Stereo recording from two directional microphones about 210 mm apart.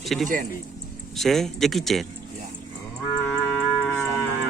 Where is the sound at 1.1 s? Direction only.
Centre (ahead or behind).